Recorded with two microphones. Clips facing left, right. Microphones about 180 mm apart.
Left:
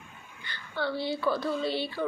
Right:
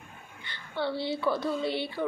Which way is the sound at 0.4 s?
25° right (ahead or behind).